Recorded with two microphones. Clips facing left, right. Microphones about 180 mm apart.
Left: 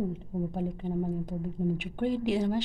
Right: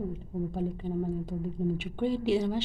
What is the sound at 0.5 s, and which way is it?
A woman's voice, 15° left (ahead or behind).